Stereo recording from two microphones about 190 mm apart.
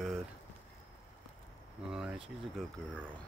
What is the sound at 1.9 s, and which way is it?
Speech, 5° right (ahead or behind).